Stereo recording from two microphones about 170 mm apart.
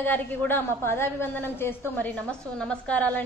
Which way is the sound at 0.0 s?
10° left (ahead or behind).